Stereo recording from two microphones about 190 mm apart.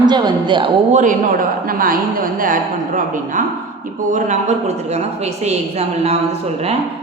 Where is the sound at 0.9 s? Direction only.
45° right (ahead or behind).